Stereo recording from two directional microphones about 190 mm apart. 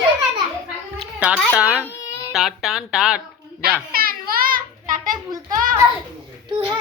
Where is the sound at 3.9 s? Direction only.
50° right (ahead or behind).